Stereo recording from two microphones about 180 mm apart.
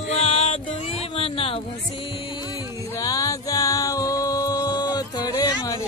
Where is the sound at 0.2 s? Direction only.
30° left (ahead or behind).